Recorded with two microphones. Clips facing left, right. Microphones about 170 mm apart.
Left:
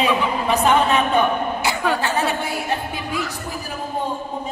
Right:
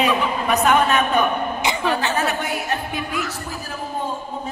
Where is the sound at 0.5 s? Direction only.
30° left (ahead or behind).